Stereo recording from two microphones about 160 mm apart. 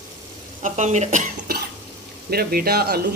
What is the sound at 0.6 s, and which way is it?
Speech, 50° right (ahead or behind).